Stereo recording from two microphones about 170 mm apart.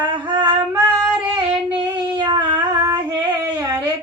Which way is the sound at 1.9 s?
25° right (ahead or behind).